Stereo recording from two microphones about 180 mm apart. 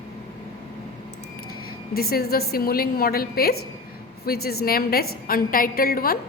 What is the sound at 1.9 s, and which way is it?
A woman's voice, 60° left (ahead or behind).